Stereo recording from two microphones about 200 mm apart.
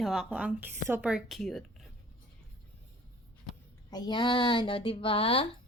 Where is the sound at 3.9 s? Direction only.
20° left (ahead or behind).